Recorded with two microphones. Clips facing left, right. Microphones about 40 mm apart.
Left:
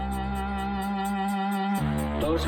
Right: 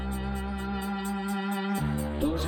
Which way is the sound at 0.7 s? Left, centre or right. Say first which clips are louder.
Left 3 dB; left.